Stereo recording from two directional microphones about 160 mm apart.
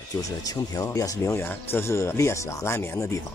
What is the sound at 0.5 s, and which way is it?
Speech, 20° left (ahead or behind).